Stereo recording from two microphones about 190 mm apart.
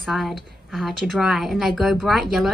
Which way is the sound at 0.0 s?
Centre (ahead or behind).